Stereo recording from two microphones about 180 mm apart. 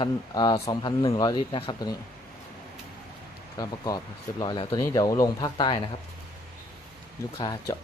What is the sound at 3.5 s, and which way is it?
Speech, 20° left (ahead or behind).